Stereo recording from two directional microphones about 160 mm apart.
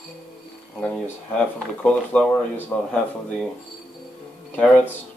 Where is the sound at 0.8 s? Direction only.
5° left (ahead or behind).